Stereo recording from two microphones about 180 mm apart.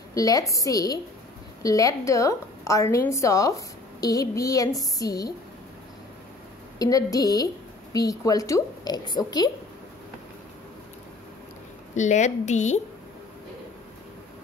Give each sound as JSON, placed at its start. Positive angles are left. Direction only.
{"t": 0.1, "sound": "a woman's voice", "side_deg": 20}
{"t": 6.8, "sound": "a woman's voice", "side_deg": 20}
{"t": 11.9, "sound": "a woman's voice", "side_deg": 40}